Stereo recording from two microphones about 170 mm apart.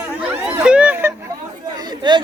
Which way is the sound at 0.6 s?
5° right (ahead or behind).